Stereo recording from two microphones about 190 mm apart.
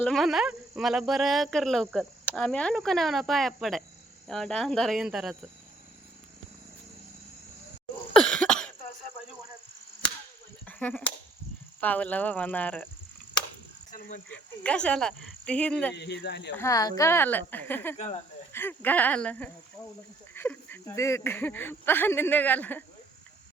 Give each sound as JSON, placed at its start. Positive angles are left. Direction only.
{"t": 0.0, "sound": "speech", "side_deg": 0}
{"t": 8.2, "sound": "cough", "side_deg": 5}
{"t": 10.7, "sound": "speech", "side_deg": 5}
{"t": 14.3, "sound": "speech", "side_deg": 5}
{"t": 16.0, "sound": "speech", "side_deg": 65}
{"t": 16.6, "sound": "speech", "side_deg": 15}
{"t": 17.9, "sound": "speech", "side_deg": 35}
{"t": 18.5, "sound": "speech", "side_deg": 10}